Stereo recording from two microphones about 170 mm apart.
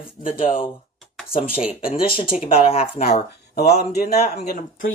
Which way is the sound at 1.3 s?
35° left (ahead or behind).